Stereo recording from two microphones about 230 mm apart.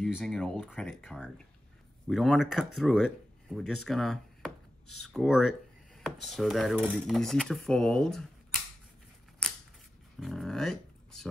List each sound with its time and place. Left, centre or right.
0.0 s speech: centre
4.8 s speech: left
5.1 s speech: centre
10.2 s speech: centre